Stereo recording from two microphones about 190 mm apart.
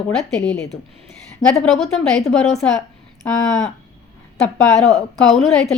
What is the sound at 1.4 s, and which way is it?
Speech, 20° left (ahead or behind).